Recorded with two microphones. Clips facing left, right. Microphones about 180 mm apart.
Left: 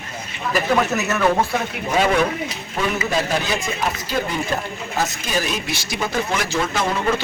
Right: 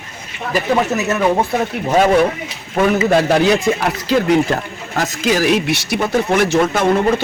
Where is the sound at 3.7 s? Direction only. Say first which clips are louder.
Right 11 dB; 65° right (ahead or behind).